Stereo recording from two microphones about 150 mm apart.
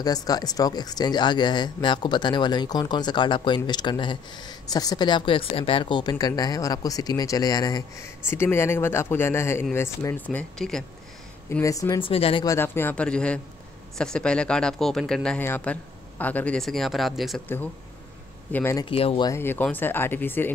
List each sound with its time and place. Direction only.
0.0 s speech: 25° left (ahead or behind)
10.3 s speech: 5° left (ahead or behind)
11.6 s speech: 20° left (ahead or behind)
12.0 s speech: 40° left (ahead or behind)
12.4 s speech: 15° left (ahead or behind); by 17.4 s centre (ahead or behind)
18.5 s speech: 15° left (ahead or behind)
18.9 s speech: 40° left (ahead or behind)
19.2 s speech: 15° left (ahead or behind)